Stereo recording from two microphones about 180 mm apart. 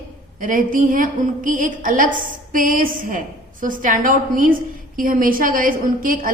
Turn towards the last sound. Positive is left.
turn(degrees=-50)  # may be behind; listen again after turning